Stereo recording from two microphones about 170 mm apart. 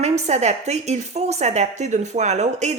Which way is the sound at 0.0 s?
40° right (ahead or behind).